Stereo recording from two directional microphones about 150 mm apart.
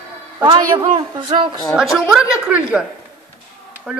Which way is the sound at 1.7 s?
5° right (ahead or behind).